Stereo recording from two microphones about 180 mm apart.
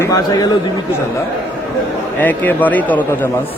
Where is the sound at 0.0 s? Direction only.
20° left (ahead or behind).